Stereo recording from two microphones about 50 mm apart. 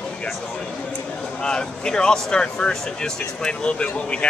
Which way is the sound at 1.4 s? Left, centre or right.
Centre.